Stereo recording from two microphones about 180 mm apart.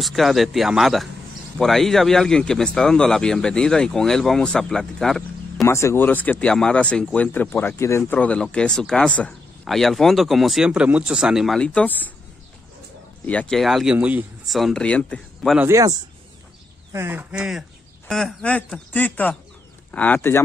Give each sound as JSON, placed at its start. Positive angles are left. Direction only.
{"t": 0.0, "sound": "speech", "side_deg": 0}
{"t": 5.6, "sound": "speech", "side_deg": 15}
{"t": 13.3, "sound": "speech", "side_deg": 5}
{"t": 15.6, "sound": "a man's voice", "side_deg": -15}